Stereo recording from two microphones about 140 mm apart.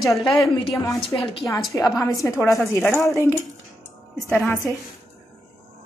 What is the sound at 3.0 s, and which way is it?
Music, 20° left (ahead or behind).